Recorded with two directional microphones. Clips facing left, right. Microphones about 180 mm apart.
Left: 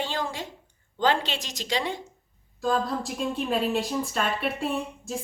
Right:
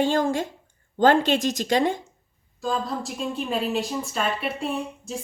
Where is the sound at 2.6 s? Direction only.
Centre (ahead or behind).